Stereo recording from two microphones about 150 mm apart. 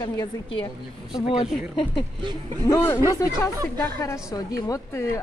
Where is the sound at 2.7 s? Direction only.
20° left (ahead or behind).